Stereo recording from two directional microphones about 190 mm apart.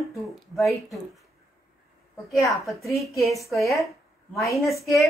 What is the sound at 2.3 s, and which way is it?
Speech, centre (ahead or behind).